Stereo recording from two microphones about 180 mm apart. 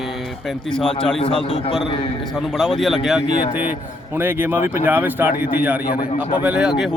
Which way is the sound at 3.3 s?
30° left (ahead or behind).